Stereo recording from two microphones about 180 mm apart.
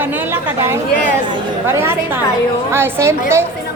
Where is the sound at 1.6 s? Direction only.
15° right (ahead or behind).